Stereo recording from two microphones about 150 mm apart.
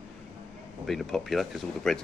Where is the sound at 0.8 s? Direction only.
Centre (ahead or behind).